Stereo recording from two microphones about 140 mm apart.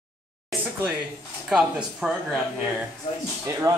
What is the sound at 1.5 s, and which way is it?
Speech, 5° right (ahead or behind).